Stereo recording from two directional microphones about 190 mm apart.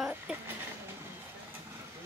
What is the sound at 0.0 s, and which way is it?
Train, 5° right (ahead or behind).